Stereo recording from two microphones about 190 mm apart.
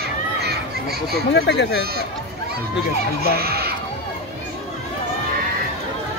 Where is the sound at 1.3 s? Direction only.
65° left (ahead or behind).